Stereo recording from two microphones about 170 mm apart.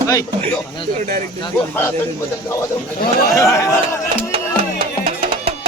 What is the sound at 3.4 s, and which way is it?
Speech, 15° left (ahead or behind).